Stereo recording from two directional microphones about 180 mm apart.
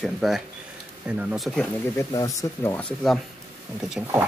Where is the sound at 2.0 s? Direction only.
15° left (ahead or behind).